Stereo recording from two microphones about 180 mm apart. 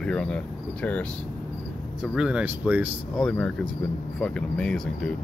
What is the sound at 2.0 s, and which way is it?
Speech, 5° right (ahead or behind).